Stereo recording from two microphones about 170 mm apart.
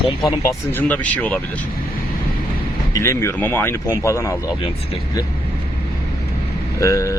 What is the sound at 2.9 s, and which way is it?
Speech, 15° left (ahead or behind).